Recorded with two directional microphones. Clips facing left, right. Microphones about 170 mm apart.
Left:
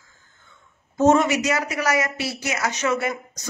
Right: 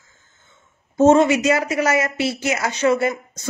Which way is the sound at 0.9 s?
25° right (ahead or behind).